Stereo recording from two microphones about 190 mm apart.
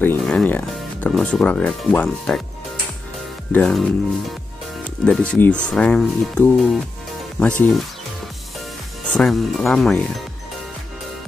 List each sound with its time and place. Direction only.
0.0 s speech: 5° left (ahead or behind)
3.5 s speech: 5° left (ahead or behind)
5.0 s speech: 5° left (ahead or behind)
9.0 s speech: 5° left (ahead or behind)